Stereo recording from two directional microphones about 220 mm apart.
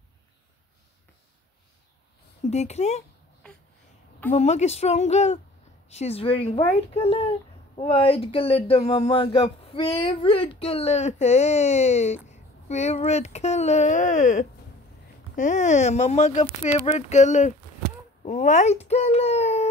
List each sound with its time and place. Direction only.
2.5 s speech: 30° left (ahead or behind)
4.3 s a child's voice: 30° left (ahead or behind)